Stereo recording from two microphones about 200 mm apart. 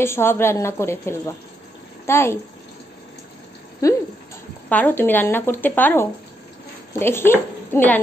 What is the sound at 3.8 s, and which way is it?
A woman's voice, 15° left (ahead or behind).